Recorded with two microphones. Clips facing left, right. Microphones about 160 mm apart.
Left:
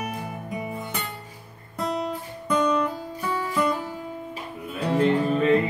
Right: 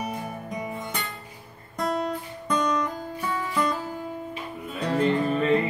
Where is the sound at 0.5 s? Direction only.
5° left (ahead or behind).